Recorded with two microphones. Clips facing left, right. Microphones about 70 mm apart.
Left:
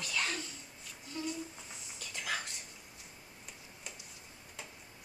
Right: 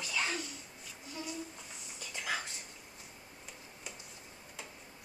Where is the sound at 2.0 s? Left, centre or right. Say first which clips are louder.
Right 1 dB; centre.